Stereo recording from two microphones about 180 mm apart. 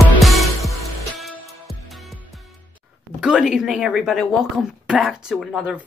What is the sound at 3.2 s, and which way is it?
A woman's voice, 5° right (ahead or behind).